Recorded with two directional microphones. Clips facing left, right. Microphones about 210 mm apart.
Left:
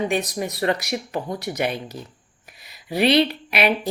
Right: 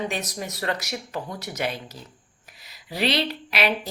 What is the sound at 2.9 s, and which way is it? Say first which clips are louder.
Speech: left 7 dB; 60° left (ahead or behind).